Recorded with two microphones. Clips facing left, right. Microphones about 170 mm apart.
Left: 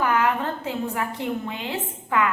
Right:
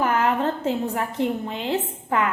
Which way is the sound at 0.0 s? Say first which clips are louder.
Right 1 dB; 35° right (ahead or behind).